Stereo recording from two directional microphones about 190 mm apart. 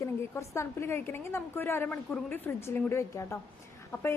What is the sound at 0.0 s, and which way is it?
A woman's voice, 15° left (ahead or behind).